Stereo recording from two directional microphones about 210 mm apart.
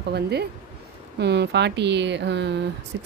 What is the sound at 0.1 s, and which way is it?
A woman's voice, 50° right (ahead or behind).